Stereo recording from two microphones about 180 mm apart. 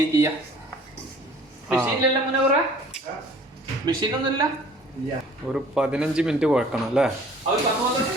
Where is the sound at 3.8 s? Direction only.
20° right (ahead or behind).